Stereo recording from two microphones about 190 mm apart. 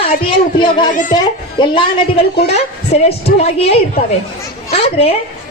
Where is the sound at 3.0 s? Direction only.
35° left (ahead or behind).